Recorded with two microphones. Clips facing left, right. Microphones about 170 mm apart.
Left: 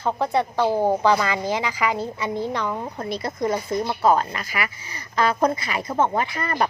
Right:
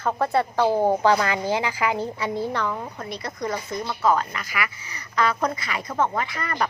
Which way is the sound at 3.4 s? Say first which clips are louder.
Left 5 dB; 25° left (ahead or behind).